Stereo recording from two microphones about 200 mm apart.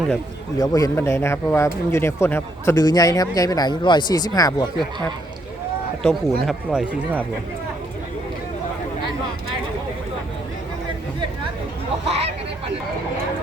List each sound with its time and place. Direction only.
0.6 s speech: 15° left (ahead or behind)
6.0 s speech: centre (ahead or behind)
12.0 s hubbub: 30° right (ahead or behind)